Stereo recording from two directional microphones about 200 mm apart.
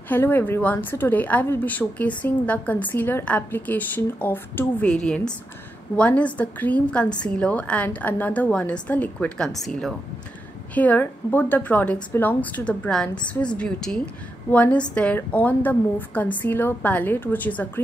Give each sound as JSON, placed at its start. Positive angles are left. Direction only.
{"t": 0.1, "sound": "a woman's voice", "side_deg": 10}